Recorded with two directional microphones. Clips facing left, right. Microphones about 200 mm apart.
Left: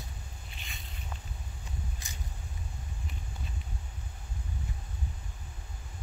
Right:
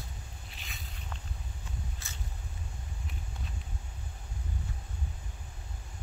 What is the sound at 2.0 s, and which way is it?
Vehicle, 15° left (ahead or behind).